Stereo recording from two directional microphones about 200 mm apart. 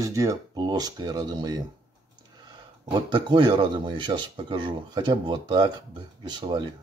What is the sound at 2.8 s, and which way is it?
Speech, 20° right (ahead or behind).